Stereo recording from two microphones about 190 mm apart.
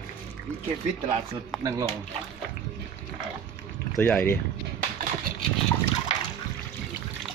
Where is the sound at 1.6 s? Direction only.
15° right (ahead or behind).